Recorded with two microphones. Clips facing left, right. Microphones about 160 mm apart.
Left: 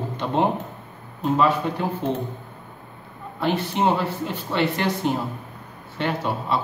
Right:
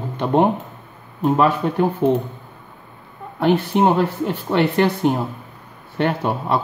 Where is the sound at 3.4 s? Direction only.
55° right (ahead or behind).